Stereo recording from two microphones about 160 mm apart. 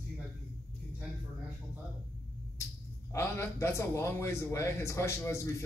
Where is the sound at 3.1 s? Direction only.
15° left (ahead or behind).